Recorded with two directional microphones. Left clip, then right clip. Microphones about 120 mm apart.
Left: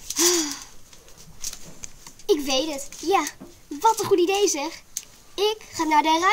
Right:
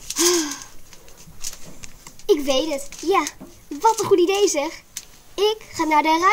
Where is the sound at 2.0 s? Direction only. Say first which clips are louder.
Right 3 dB; 15° left (ahead or behind).